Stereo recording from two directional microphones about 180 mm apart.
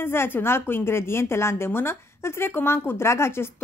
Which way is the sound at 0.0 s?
15° left (ahead or behind).